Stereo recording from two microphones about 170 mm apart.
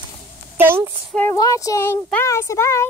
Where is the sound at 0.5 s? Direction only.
15° right (ahead or behind).